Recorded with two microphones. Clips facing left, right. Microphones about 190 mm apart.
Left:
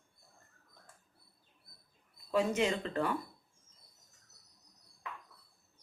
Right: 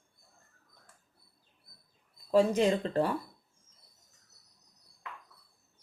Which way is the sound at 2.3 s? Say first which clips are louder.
Right 6 dB; 35° right (ahead or behind).